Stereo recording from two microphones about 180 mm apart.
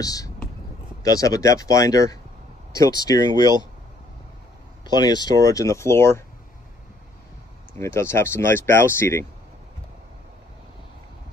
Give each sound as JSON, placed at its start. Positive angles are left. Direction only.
{"t": 0.0, "sound": "speech", "side_deg": 20}
{"t": 4.8, "sound": "speech", "side_deg": 25}
{"t": 7.8, "sound": "speech", "side_deg": 15}